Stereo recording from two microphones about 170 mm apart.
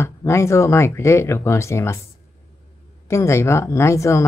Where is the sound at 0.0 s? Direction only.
15° left (ahead or behind).